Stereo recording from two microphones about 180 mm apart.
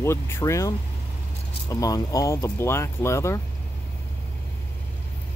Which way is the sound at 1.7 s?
20° left (ahead or behind).